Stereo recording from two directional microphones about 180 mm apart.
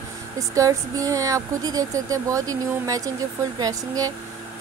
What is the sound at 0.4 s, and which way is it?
Speech, 20° right (ahead or behind).